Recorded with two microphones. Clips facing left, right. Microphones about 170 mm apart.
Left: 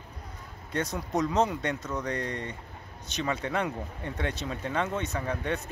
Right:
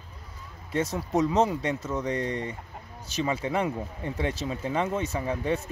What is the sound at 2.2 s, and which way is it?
Speech, 30° right (ahead or behind).